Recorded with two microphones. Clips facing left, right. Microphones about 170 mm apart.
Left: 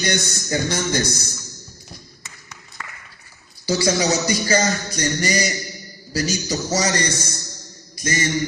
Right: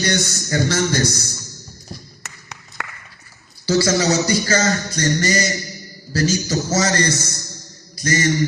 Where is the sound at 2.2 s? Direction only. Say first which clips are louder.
Right 4 dB; 70° right (ahead or behind).